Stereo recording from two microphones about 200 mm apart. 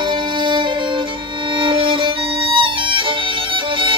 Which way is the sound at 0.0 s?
25° right (ahead or behind).